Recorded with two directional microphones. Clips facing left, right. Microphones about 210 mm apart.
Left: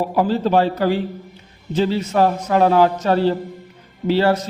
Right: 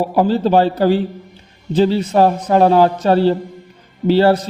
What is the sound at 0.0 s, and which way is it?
A man's voice, 30° right (ahead or behind).